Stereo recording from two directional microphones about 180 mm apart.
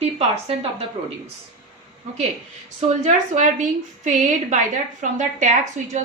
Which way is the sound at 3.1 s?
40° right (ahead or behind).